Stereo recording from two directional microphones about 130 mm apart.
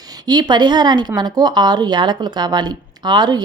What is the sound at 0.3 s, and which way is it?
Speech, 35° right (ahead or behind).